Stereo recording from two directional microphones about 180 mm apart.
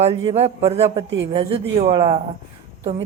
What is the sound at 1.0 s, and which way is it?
Speech, 90° right.